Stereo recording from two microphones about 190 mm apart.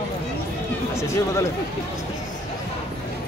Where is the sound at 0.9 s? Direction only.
15° left (ahead or behind).